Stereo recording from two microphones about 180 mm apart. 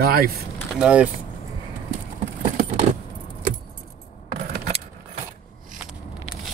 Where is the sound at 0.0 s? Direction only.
55° right (ahead or behind).